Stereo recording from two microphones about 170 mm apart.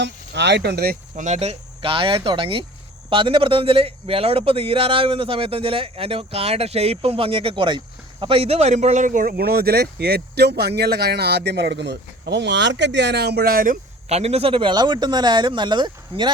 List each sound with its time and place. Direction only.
0.0 s speech: 90° right; by 0.9 s 70° right (ahead or behind)
1.1 s a man's voice: 45° right (ahead or behind)
14.1 s speech: 40° right (ahead or behind)